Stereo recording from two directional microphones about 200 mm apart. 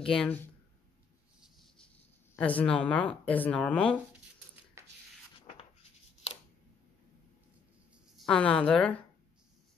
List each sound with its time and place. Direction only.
0.0 s speech: 5° left (ahead or behind)
2.3 s speech: 5° left (ahead or behind)
4.8 s a sound: 15° right (ahead or behind)
8.2 s speech: 5° left (ahead or behind)